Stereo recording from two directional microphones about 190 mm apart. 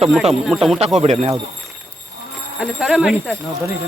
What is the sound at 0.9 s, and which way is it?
Speech, 35° right (ahead or behind).